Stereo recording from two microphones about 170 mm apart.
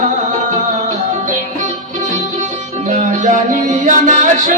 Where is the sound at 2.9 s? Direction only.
45° right (ahead or behind).